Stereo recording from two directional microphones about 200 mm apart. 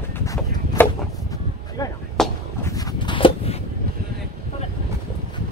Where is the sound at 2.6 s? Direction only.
20° left (ahead or behind).